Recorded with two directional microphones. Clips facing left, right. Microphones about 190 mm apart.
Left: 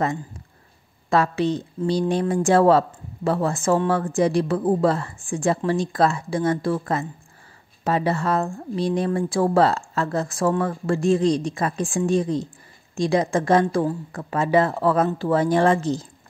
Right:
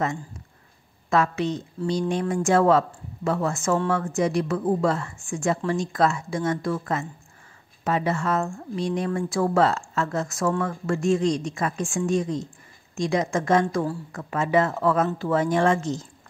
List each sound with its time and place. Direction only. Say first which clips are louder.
1.1 s speech: left 3 dB; 30° left (ahead or behind)